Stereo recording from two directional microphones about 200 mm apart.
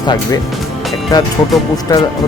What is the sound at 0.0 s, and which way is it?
Speech, 20° left (ahead or behind).